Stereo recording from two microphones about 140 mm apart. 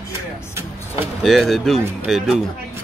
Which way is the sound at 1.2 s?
Centre (ahead or behind).